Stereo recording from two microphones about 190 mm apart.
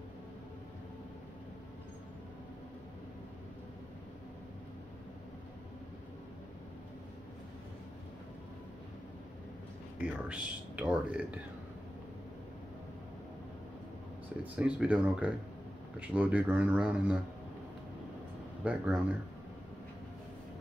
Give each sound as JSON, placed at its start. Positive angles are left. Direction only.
{"t": 10.0, "sound": "speech", "side_deg": -10}
{"t": 14.4, "sound": "speech", "side_deg": -5}
{"t": 18.6, "sound": "speech", "side_deg": -5}